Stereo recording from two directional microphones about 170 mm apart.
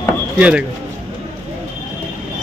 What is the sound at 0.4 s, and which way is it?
Speech, 5° right (ahead or behind).